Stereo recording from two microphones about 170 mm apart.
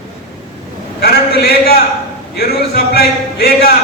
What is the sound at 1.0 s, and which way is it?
A man's voice, 65° left (ahead or behind).